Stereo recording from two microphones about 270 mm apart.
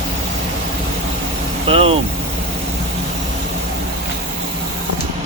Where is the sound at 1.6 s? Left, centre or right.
Right.